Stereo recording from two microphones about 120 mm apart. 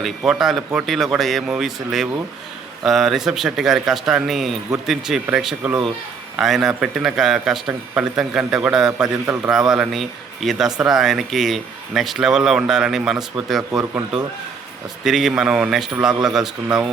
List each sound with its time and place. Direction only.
0.0 s speech: centre (ahead or behind)
9.2 s a man's voice: 25° right (ahead or behind)
9.5 s speech: 5° right (ahead or behind)
15.0 s speech: 5° right (ahead or behind)